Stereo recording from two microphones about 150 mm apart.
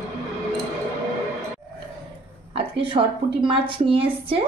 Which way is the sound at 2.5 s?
35° right (ahead or behind).